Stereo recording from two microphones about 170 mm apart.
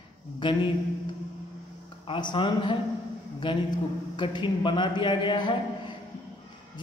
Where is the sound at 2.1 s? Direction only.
30° left (ahead or behind).